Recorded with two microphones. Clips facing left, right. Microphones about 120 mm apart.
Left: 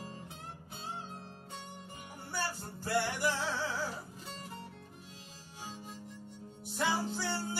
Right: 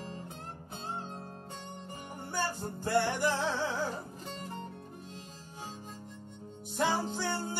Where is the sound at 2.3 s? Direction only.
50° right (ahead or behind).